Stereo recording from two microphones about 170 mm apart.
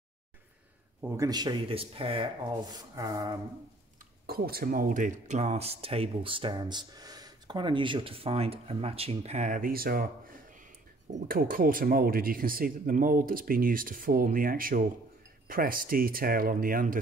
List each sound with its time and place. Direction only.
1.0 s speech: 20° right (ahead or behind)
4.3 s speech: 65° right (ahead or behind)
10.6 s speech: 45° right (ahead or behind)